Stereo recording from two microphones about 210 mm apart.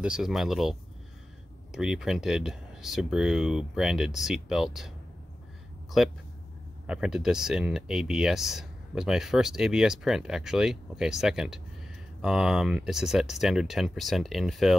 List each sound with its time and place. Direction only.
0.0 s speech: 5° right (ahead or behind)
6.9 s speech: 5° right (ahead or behind)